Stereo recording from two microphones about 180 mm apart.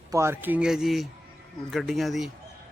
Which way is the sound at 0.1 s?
15° right (ahead or behind).